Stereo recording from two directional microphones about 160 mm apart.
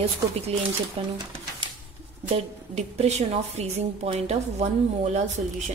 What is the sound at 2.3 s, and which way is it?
A woman's voice, 45° right (ahead or behind).